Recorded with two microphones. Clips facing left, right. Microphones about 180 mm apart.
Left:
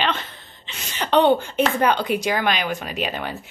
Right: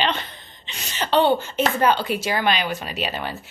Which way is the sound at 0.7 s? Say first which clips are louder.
Even; 10° left (ahead or behind).